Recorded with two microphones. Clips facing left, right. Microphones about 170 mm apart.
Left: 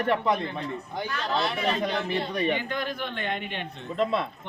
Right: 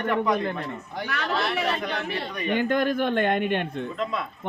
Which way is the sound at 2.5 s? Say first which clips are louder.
Right 8 dB; 50° right (ahead or behind).